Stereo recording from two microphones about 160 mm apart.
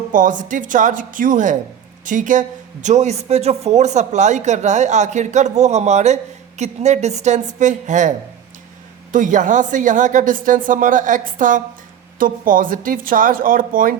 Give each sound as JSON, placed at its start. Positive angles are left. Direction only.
{"t": 0.1, "sound": "speech", "side_deg": -55}
{"t": 9.1, "sound": "speech", "side_deg": -55}